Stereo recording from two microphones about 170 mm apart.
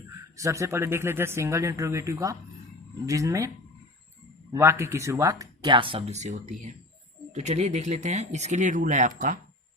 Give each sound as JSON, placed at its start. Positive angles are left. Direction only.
{"t": 0.3, "sound": "speech", "side_deg": -20}
{"t": 4.5, "sound": "speech", "side_deg": -15}